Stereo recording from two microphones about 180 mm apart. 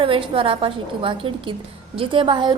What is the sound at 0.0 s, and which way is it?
A woman's voice, 30° right (ahead or behind).